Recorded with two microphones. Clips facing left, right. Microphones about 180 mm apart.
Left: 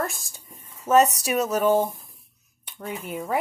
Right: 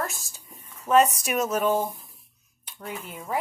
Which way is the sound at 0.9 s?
40° left (ahead or behind).